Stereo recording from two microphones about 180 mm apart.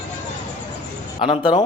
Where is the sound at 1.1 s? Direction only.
30° left (ahead or behind).